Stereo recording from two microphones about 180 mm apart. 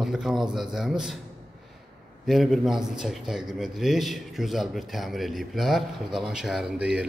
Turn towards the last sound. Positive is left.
turn(degrees=-5)  # may be behind; listen again after turning